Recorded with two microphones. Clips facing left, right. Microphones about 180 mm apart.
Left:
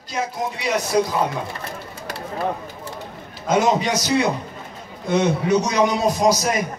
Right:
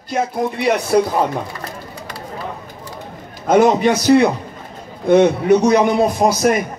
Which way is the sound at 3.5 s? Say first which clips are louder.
Right 6 dB; 55° right (ahead or behind).